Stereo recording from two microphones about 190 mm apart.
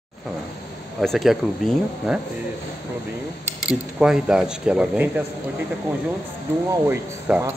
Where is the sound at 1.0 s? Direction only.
Centre (ahead or behind).